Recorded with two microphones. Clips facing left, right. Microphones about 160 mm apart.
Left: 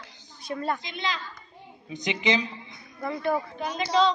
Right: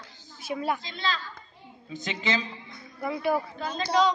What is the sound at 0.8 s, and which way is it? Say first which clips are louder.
A man's voice: even; 15° left (ahead or behind).